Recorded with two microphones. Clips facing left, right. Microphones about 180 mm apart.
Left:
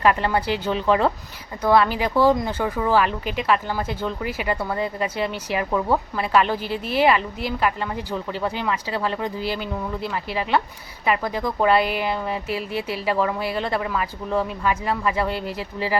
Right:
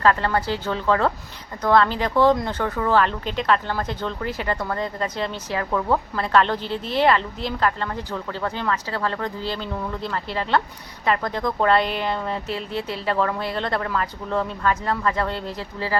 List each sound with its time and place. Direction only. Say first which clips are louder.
0.0 s speech: even; 15° left (ahead or behind)